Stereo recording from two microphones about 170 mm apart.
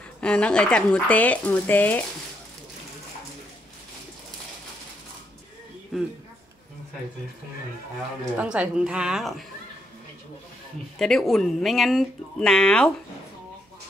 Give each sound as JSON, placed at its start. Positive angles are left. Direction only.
{"t": 0.2, "sound": "speech", "side_deg": 5}
{"t": 8.4, "sound": "speech", "side_deg": -5}
{"t": 11.0, "sound": "speech", "side_deg": 5}